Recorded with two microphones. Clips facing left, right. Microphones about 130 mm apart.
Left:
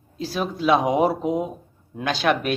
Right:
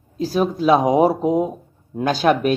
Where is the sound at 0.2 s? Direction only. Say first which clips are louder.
Right 6 dB; 40° right (ahead or behind).